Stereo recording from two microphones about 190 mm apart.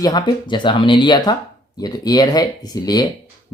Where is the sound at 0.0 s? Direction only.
20° left (ahead or behind).